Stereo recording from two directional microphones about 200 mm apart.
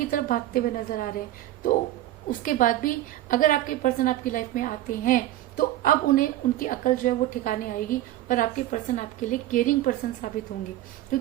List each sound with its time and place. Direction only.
0.0 s a woman's voice: 45° left (ahead or behind)
2.4 s a woman's voice: 40° left (ahead or behind)
11.1 s a sound: 45° left (ahead or behind)